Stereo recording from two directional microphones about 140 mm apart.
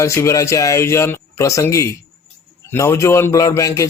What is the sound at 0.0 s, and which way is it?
A man's voice, 20° left (ahead or behind).